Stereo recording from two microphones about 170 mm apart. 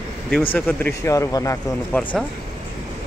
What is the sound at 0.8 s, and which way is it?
Speech, 15° left (ahead or behind).